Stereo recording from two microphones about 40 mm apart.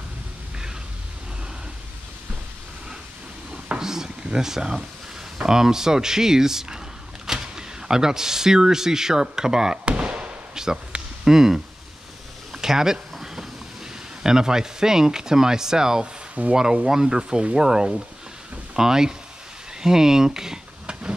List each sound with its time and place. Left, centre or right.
3.7 s speech: centre
9.8 s fireworks: right
10.5 s a sound: centre
11.2 s speech: centre
12.5 s a sound: centre
14.2 s speech: centre